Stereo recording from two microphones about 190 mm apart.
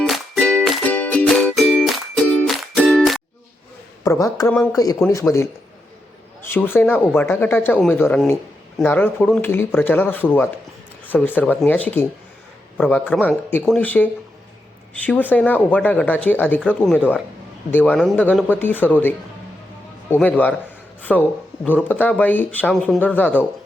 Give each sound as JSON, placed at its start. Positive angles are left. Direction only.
{"t": 0.0, "sound": "music", "side_deg": 5}
{"t": 4.0, "sound": "speech", "side_deg": 15}
{"t": 5.2, "sound": "speech", "side_deg": 5}
{"t": 6.4, "sound": "speech", "side_deg": 10}